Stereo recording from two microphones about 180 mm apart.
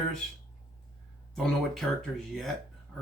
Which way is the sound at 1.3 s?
Centre (ahead or behind).